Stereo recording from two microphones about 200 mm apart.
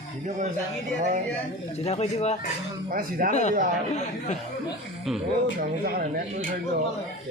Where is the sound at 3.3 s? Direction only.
35° left (ahead or behind).